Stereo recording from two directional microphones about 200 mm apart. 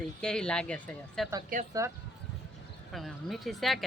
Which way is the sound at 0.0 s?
5° left (ahead or behind).